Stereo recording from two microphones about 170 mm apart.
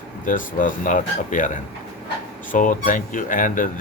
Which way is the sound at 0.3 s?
50° left (ahead or behind).